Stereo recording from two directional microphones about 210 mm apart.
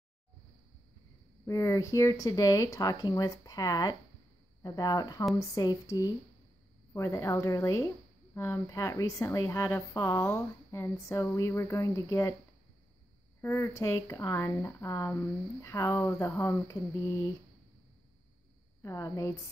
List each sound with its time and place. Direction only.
1.4 s a woman's voice: 15° left (ahead or behind)
13.4 s a woman's voice: 10° left (ahead or behind)
18.8 s a woman's voice: 15° left (ahead or behind)